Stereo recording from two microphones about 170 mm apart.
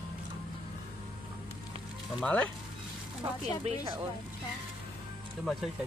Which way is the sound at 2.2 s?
10° left (ahead or behind).